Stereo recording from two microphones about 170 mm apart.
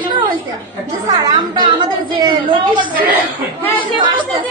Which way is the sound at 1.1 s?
25° right (ahead or behind).